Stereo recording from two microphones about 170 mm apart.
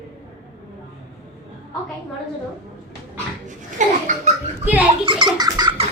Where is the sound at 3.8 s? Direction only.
45° right (ahead or behind).